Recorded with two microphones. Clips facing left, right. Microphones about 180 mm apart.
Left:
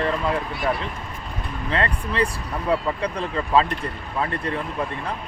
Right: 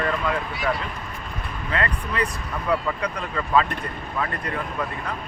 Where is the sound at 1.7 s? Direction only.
30° left (ahead or behind).